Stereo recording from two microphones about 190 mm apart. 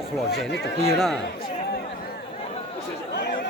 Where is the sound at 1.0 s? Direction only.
Centre (ahead or behind).